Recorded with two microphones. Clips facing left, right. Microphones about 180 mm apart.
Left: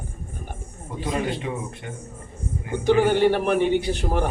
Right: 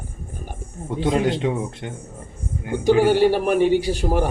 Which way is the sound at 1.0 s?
85° right.